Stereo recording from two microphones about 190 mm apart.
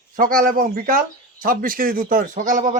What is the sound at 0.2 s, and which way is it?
Speech, 50° right (ahead or behind).